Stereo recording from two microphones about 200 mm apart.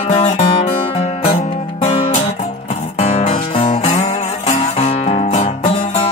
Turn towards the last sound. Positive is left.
turn(degrees=35)  # may be behind; listen again after turning